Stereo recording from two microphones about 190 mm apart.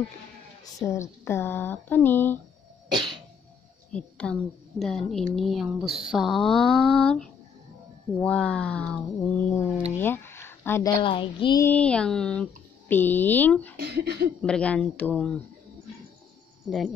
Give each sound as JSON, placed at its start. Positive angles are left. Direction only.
{"t": 0.7, "sound": "speech", "side_deg": 15}
{"t": 3.9, "sound": "a woman's voice", "side_deg": 5}
{"t": 9.9, "sound": "a sound", "side_deg": 10}
{"t": 11.0, "sound": "speech", "side_deg": 25}
{"t": 11.6, "sound": "speech", "side_deg": 5}
{"t": 13.7, "sound": "speech", "side_deg": -60}
{"t": 14.4, "sound": "speech", "side_deg": 5}